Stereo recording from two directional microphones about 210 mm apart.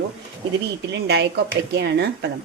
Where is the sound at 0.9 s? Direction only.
55° right (ahead or behind).